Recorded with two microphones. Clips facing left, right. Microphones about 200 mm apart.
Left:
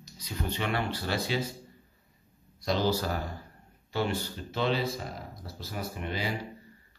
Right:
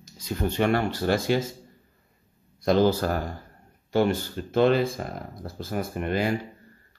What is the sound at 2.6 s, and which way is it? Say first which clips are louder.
Speech: right 7 dB; 50° right (ahead or behind).